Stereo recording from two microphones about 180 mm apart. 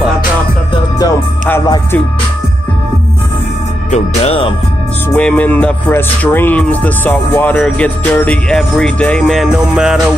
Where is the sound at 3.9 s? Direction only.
35° left (ahead or behind).